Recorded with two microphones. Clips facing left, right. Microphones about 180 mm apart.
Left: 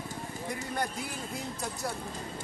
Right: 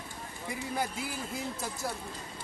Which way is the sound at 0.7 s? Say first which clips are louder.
Right 2 dB; 5° right (ahead or behind).